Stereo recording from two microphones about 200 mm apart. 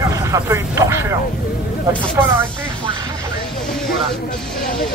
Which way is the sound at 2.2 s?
10° right (ahead or behind).